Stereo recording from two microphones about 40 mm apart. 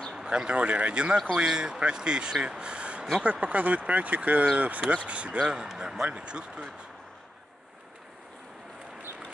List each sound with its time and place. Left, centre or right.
0.1 s speech: centre
1.3 s speech: centre
5.7 s speech: centre